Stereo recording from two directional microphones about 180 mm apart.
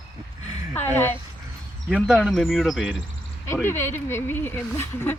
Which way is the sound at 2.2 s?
Centre (ahead or behind).